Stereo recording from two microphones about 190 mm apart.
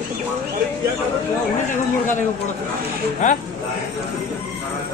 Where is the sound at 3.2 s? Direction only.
40° left (ahead or behind).